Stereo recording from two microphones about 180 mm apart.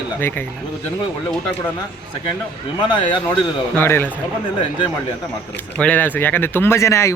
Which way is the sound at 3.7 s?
10° left (ahead or behind).